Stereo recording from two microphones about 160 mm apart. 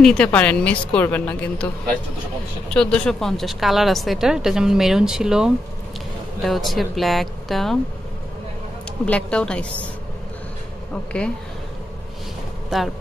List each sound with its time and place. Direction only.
0.0 s a woman's voice: 5° left (ahead or behind)
2.7 s a woman's voice: 5° left (ahead or behind)
9.0 s a woman's voice: 5° left (ahead or behind)
12.6 s speech: centre (ahead or behind)